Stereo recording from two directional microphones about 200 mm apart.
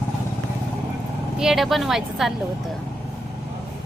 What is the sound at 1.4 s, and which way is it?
Speech, centre (ahead or behind).